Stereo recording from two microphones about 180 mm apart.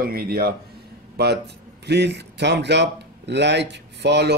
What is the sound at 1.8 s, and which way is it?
Speech, 70° right (ahead or behind).